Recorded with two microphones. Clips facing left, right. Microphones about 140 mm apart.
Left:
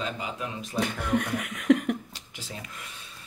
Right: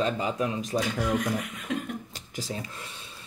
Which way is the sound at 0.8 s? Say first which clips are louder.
Left 1 dB; 60° left (ahead or behind).